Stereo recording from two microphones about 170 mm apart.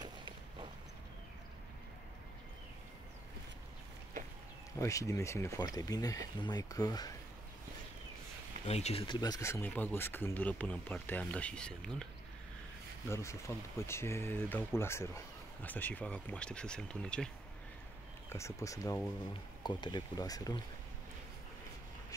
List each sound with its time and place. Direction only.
0.0 s walk: 30° right (ahead or behind)
4.7 s speech: 20° left (ahead or behind)
8.6 s speech: 40° left (ahead or behind); by 12.1 s 5° left (ahead or behind)
13.1 s speech: 15° left (ahead or behind)
18.3 s speech: 15° left (ahead or behind)